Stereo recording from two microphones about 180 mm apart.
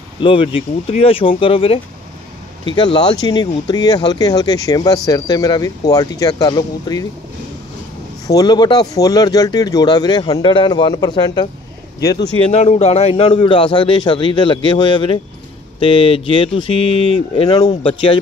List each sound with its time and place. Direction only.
0.2 s speech: 30° left (ahead or behind)
8.3 s speech: 20° left (ahead or behind)
12.0 s speech: 65° left (ahead or behind)
12.4 s speech: 35° left (ahead or behind)